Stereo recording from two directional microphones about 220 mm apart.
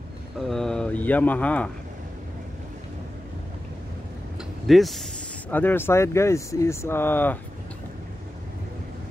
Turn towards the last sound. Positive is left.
turn(degrees=10)  # may be behind; listen again after turning